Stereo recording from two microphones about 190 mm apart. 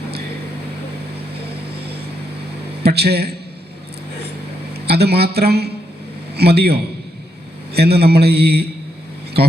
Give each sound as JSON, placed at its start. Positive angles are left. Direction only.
{"t": 2.8, "sound": "a man's voice", "side_deg": -60}
{"t": 4.9, "sound": "a man's voice", "side_deg": -60}
{"t": 7.8, "sound": "a man's voice", "side_deg": -55}